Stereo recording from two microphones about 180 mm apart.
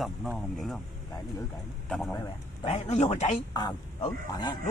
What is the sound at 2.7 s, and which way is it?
Speech, 40° left (ahead or behind).